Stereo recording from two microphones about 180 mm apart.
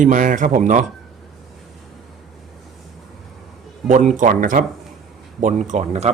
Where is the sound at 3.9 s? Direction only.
45° right (ahead or behind).